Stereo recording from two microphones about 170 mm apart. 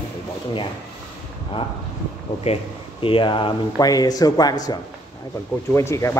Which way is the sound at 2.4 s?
35° left (ahead or behind).